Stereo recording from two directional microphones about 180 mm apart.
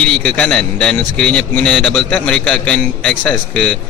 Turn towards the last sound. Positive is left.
turn(degrees=5)  # may be behind; listen again after turning